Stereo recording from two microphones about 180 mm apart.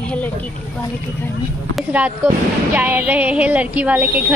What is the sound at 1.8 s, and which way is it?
Music, 10° right (ahead or behind).